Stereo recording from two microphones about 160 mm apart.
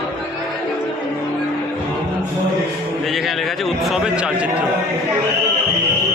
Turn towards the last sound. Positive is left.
turn(degrees=-5)  # may be behind; listen again after turning